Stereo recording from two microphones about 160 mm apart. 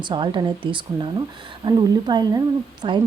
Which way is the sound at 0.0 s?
30° right (ahead or behind).